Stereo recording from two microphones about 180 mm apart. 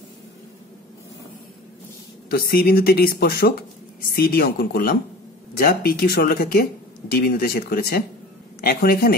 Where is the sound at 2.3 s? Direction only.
55° left (ahead or behind).